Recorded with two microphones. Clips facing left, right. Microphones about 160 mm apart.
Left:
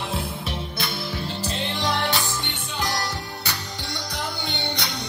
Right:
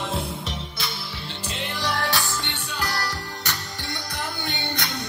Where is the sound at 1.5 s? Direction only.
30° left (ahead or behind).